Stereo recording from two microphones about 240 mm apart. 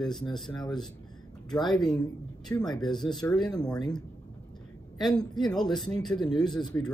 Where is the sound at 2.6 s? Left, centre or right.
Centre.